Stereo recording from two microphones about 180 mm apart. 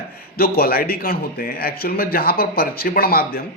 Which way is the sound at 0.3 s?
55° left (ahead or behind).